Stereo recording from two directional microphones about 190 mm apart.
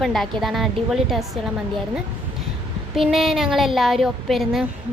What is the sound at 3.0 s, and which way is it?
A woman's voice, centre (ahead or behind).